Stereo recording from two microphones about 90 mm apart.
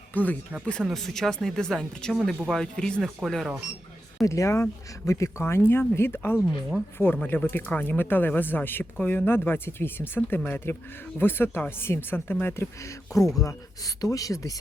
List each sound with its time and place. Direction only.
0.1 s speech: 20° left (ahead or behind); by 3.6 s 5° left (ahead or behind)
4.2 s speech: 35° left (ahead or behind)